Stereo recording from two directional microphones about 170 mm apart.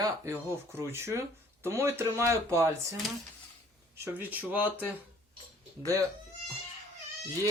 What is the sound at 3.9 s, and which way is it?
Speech, 10° right (ahead or behind).